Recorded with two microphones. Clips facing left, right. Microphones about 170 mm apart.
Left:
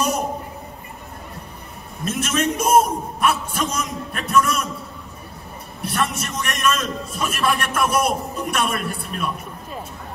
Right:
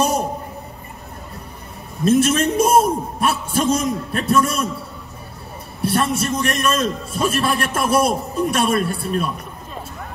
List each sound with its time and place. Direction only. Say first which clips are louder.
2.0 s a man's voice: right 7 dB; 30° right (ahead or behind)
5.9 s a man's voice: right 5 dB; 30° right (ahead or behind)